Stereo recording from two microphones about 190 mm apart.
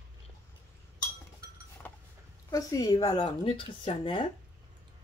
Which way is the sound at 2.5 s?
20° left (ahead or behind).